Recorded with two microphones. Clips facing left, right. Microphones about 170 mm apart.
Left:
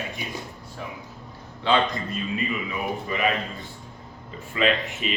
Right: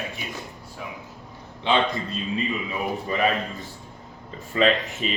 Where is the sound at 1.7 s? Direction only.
20° right (ahead or behind).